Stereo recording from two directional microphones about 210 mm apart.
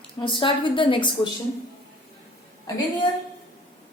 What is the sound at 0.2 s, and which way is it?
A woman's voice, 20° left (ahead or behind).